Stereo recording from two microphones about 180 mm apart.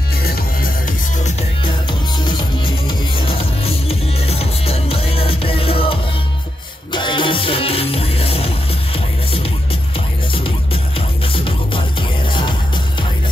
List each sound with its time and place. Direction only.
0.2 s music: 60° left (ahead or behind)
1.6 s music: 25° left (ahead or behind)